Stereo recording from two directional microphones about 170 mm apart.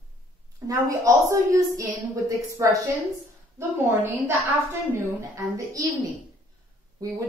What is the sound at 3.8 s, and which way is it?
Speech, 10° right (ahead or behind).